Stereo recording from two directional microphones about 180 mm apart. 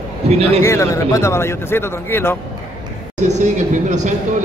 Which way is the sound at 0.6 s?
15° left (ahead or behind).